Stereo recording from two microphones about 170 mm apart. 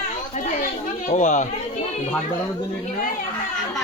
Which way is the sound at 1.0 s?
45° left (ahead or behind).